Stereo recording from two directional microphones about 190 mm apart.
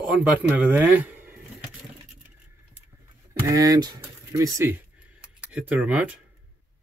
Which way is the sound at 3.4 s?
20° right (ahead or behind).